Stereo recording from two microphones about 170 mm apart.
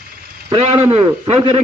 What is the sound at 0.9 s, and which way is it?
Speech, 35° right (ahead or behind).